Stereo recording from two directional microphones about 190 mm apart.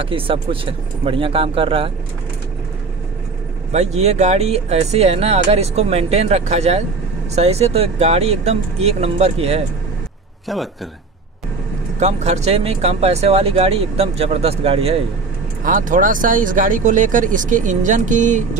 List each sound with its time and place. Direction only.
0.0 s speech: 30° right (ahead or behind)
3.7 s speech: 35° right (ahead or behind)
10.5 s a man's voice: centre (ahead or behind)
12.0 s speech: 35° right (ahead or behind)
15.6 s speech: 45° right (ahead or behind)